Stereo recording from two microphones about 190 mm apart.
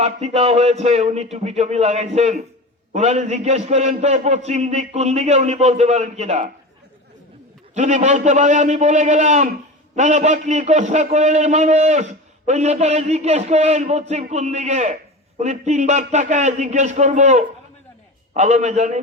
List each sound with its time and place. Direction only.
0.0 s a man's voice: 35° right (ahead or behind)
7.8 s a man's voice: 40° right (ahead or behind)